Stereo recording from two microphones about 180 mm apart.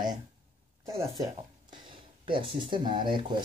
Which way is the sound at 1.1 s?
20° right (ahead or behind).